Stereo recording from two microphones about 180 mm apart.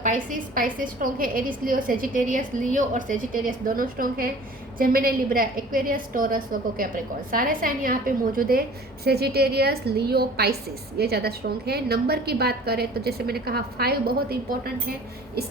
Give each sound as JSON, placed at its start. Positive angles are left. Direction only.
{"t": 0.0, "sound": "a woman's voice", "side_deg": -45}